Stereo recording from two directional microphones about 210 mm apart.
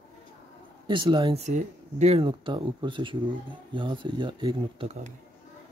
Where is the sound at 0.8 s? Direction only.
20° right (ahead or behind).